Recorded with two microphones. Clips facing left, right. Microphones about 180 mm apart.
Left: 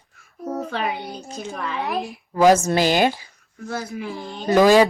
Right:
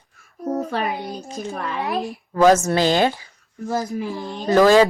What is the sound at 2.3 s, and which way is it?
Speech, 15° left (ahead or behind).